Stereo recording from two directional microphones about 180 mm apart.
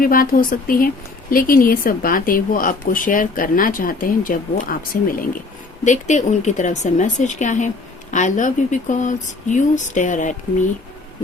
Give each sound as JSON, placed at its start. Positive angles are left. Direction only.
{"t": 0.0, "sound": "a woman's voice", "side_deg": 55}